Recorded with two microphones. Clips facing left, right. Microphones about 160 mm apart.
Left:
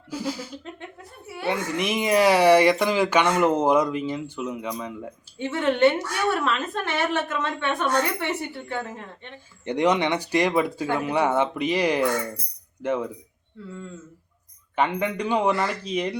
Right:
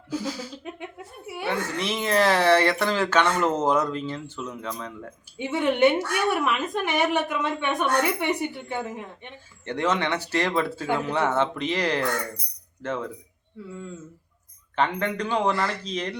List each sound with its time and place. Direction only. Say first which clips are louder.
0.7 s a sound: right 2 dB; 15° right (ahead or behind)
1.5 s speech: left 2 dB; 15° left (ahead or behind)
5.4 s a woman's voice: left 1 dB; 15° right (ahead or behind)
9.6 s speech: left 4 dB; 15° left (ahead or behind)
14.8 s speech: left 1 dB; 10° left (ahead or behind)